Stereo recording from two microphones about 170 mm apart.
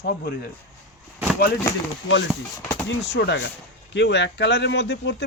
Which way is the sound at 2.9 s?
90° left.